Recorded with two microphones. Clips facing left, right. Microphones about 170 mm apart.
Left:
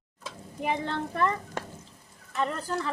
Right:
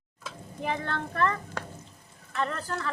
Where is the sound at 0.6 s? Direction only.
15° left (ahead or behind).